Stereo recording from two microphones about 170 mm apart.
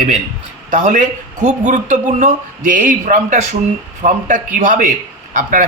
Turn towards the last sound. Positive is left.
turn(degrees=-50)  # may be behind; listen again after turning